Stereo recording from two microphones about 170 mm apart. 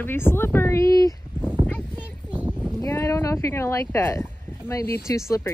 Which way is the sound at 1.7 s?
10° left (ahead or behind).